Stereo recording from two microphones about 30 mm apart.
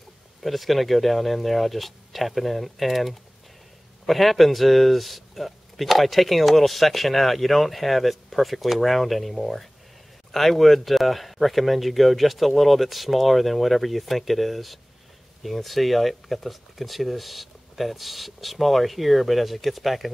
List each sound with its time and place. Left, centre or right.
0.4 s a man's voice: centre